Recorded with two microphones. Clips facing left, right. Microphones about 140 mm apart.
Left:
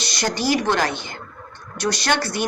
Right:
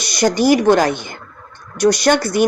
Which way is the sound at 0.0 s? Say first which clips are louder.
Right 9 dB; 15° right (ahead or behind).